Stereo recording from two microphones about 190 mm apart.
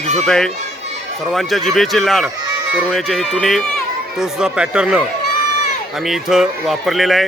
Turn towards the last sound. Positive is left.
turn(degrees=0)  # may be behind; listen again after turning